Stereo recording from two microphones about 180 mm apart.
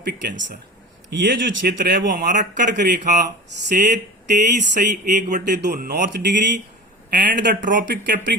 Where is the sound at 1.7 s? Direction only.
55° right (ahead or behind).